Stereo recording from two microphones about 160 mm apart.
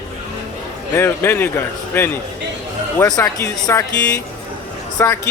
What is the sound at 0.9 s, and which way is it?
A man's voice, 15° left (ahead or behind).